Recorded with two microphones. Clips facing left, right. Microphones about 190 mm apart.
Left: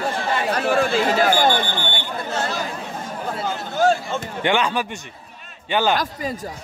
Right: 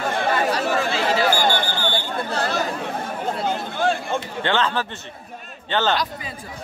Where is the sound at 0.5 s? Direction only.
50° left (ahead or behind).